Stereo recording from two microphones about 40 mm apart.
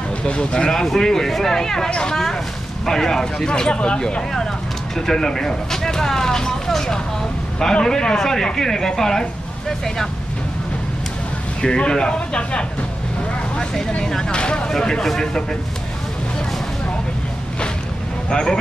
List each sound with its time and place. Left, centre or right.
0.3 s speech: left
0.9 s speech: centre
1.9 s speech: left
2.8 s speech: centre
4.9 s speech: centre
11.6 s speech: left
18.3 s speech: centre